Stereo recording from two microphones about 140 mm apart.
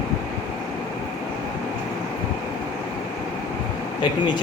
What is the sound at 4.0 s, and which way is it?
Speech, 30° left (ahead or behind).